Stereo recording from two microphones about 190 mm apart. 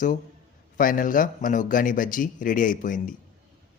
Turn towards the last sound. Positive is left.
turn(degrees=45)  # may be behind; listen again after turning